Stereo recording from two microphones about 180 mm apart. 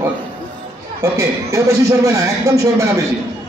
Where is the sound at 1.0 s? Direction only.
15° right (ahead or behind).